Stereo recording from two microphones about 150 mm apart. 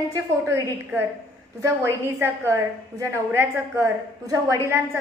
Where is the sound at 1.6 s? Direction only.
20° right (ahead or behind).